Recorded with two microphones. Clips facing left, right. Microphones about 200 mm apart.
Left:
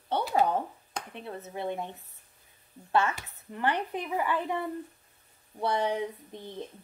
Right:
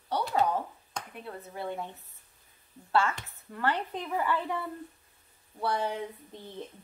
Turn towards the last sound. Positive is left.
turn(degrees=20)  # may be behind; listen again after turning